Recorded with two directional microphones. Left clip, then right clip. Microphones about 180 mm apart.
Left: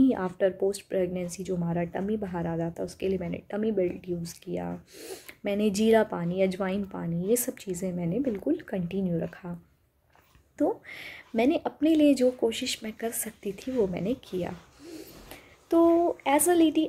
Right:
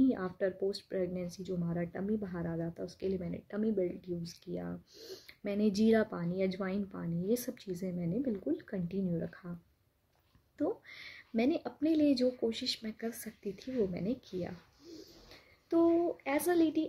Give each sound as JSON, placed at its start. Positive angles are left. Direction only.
{"t": 0.1, "sound": "speech", "side_deg": -15}
{"t": 10.6, "sound": "speech", "side_deg": -20}